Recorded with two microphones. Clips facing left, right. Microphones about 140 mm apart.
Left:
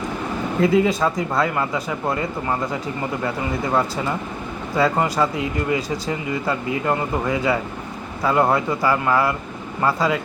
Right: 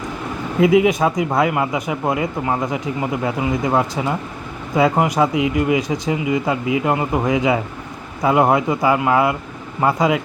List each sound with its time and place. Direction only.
0.6 s speech: 15° right (ahead or behind)